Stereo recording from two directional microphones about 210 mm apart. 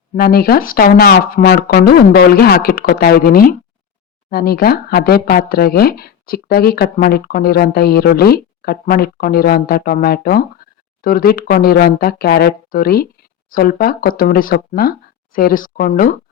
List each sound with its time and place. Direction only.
0.2 s speech: 45° left (ahead or behind)